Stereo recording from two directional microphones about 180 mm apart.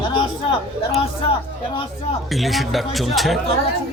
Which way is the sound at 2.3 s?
Centre (ahead or behind).